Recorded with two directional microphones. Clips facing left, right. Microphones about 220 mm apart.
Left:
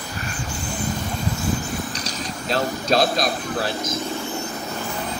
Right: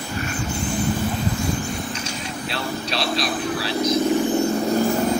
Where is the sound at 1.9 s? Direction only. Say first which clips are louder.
Right 1 dB; 40° left (ahead or behind).